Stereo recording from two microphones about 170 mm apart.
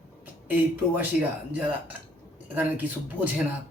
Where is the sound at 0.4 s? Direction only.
10° right (ahead or behind).